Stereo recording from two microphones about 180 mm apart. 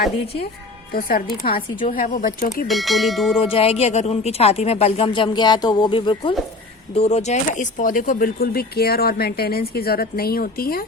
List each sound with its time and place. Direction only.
0.9 s a woman's voice: 55° left (ahead or behind)
2.6 s speech: centre (ahead or behind)
3.4 s a woman's voice: 30° left (ahead or behind); by 10.8 s 55° left (ahead or behind)